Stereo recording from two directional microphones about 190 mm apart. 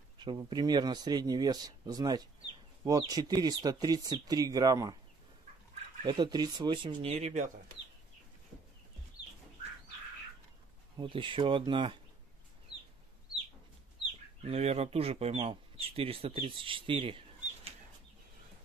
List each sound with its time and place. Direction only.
0.2 s speech: 25° right (ahead or behind)
6.0 s speech: 20° right (ahead or behind); by 7.7 s 40° right (ahead or behind)
11.0 s speech: 25° right (ahead or behind)
14.4 s speech: 35° right (ahead or behind)